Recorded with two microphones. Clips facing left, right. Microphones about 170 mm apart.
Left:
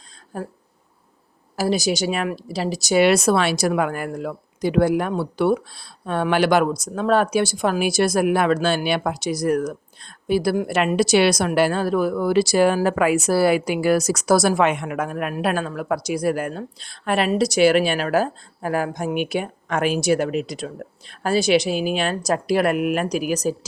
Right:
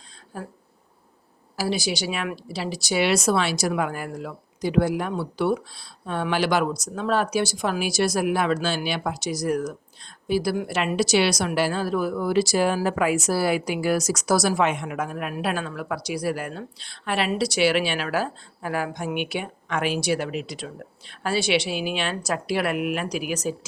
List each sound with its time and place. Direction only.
0.3 s a woman's voice: 45° left (ahead or behind)
1.5 s a woman's voice: 45° left (ahead or behind)